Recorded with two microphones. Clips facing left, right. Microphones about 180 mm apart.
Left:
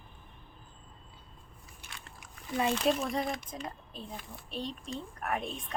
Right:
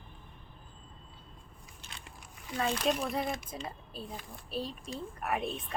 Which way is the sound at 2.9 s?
Centre (ahead or behind).